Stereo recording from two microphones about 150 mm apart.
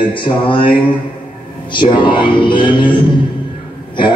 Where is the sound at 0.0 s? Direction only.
35° left (ahead or behind).